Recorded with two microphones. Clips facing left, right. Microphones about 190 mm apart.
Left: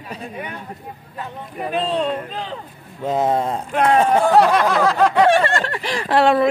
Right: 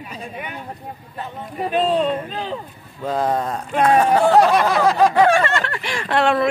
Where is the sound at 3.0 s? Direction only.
20° left (ahead or behind).